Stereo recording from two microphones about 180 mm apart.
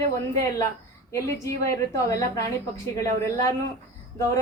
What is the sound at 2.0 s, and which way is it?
Speech, 20° left (ahead or behind).